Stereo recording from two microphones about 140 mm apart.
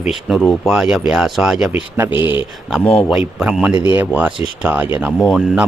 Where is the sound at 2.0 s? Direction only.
15° right (ahead or behind).